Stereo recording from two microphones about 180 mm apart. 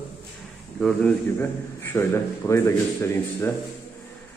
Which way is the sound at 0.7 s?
5° left (ahead or behind).